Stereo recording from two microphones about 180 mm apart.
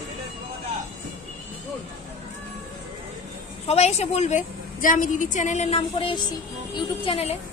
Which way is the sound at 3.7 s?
35° left (ahead or behind).